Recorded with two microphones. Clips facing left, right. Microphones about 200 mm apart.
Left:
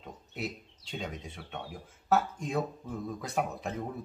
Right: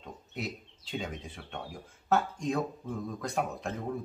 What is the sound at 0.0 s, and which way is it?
Speech, centre (ahead or behind).